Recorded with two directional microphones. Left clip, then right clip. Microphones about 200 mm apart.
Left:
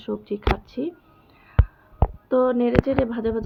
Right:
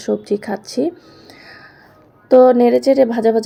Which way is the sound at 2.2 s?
15° right (ahead or behind).